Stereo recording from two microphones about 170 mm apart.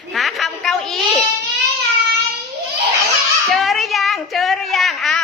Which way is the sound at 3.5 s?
Centre (ahead or behind).